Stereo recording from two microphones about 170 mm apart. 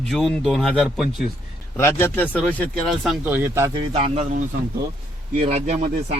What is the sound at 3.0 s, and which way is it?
Speech, 10° right (ahead or behind).